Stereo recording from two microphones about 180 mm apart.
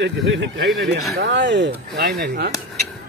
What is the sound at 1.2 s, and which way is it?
Speech, 75° right (ahead or behind).